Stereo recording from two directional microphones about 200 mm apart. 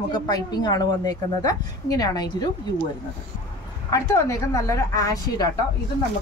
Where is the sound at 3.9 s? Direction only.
15° left (ahead or behind).